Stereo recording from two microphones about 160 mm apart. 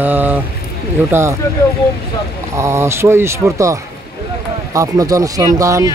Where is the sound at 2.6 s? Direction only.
15° right (ahead or behind).